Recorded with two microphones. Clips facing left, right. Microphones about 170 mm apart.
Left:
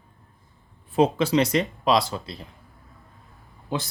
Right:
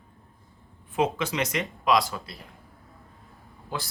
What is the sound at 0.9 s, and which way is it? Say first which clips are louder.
Speech: left 6 dB; 35° left (ahead or behind).